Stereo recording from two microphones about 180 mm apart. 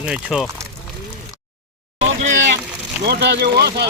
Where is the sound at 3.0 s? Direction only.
65° right (ahead or behind).